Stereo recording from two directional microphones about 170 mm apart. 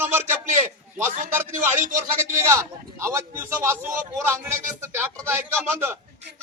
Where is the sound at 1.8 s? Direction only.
50° right (ahead or behind).